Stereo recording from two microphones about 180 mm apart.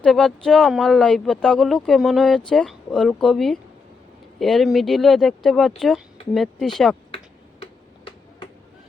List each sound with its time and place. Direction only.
0.0 s speech: 5° left (ahead or behind)
7.6 s finger snapping: 30° left (ahead or behind)